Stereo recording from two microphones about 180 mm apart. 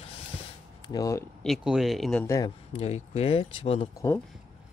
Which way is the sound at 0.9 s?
20° left (ahead or behind).